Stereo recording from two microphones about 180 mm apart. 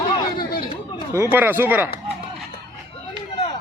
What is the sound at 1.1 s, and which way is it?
Speech, 15° right (ahead or behind).